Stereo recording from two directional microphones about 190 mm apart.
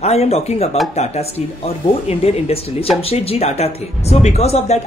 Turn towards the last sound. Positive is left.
turn(degrees=35)  # may be behind; listen again after turning